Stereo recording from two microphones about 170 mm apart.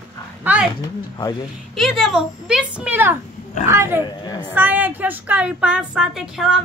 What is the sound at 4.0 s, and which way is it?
Speech, 25° left (ahead or behind).